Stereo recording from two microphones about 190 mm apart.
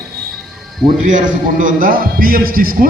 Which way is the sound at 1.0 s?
45° right (ahead or behind).